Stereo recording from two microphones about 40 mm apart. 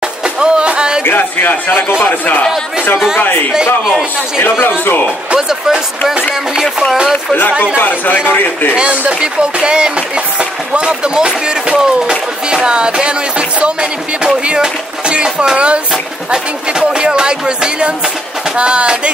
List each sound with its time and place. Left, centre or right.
0.4 s music: right
1.0 s speech: left
1.9 s speech: left
3.2 s speech: left
4.4 s speech: left
5.5 s speech: centre
6.5 s music: centre
7.7 s a man's voice: left
9.2 s speech: right
16.9 s speech: right